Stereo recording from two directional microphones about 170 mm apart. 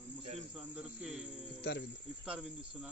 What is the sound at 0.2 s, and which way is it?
Cricket, 40° right (ahead or behind).